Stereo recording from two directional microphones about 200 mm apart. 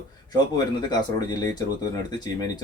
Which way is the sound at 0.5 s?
20° left (ahead or behind).